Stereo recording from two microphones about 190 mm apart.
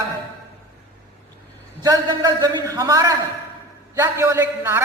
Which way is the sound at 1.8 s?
20° right (ahead or behind).